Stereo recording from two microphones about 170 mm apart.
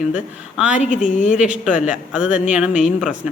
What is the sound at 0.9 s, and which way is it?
Speech, 45° left (ahead or behind).